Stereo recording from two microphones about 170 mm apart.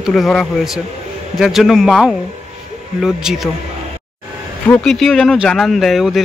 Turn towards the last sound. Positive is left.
turn(degrees=0)  # may be behind; listen again after turning